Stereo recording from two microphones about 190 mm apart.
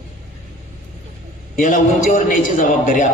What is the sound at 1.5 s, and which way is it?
A man's voice, 45° left (ahead or behind).